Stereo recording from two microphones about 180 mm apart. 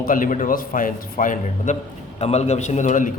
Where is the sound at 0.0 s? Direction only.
50° left (ahead or behind).